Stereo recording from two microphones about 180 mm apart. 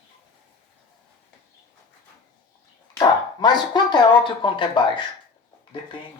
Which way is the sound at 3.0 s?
25° left (ahead or behind).